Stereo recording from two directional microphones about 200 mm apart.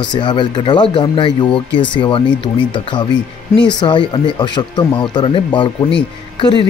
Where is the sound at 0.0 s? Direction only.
20° left (ahead or behind).